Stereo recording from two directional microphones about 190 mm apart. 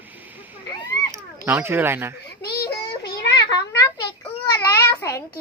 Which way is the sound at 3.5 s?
15° left (ahead or behind).